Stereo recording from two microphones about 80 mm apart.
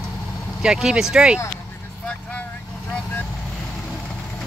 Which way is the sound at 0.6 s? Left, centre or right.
Centre.